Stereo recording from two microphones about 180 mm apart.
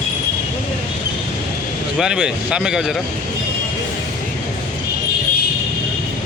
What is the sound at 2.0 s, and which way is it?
Speech, 5° right (ahead or behind).